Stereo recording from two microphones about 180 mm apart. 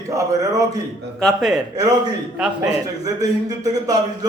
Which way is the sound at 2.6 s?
20° right (ahead or behind).